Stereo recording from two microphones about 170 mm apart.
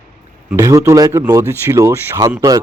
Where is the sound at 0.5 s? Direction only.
15° right (ahead or behind).